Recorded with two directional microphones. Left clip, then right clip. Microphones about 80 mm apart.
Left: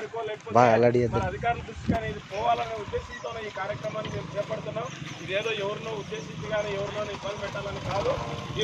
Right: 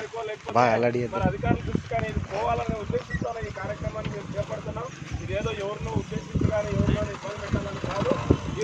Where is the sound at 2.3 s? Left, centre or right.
Centre.